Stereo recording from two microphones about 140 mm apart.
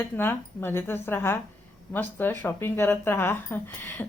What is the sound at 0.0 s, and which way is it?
Speech, 15° left (ahead or behind).